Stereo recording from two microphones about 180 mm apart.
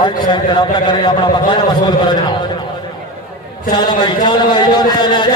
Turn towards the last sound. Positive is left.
turn(degrees=25)  # may be behind; listen again after turning